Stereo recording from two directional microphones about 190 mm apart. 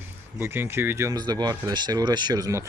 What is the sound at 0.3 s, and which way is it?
Speech, 10° right (ahead or behind).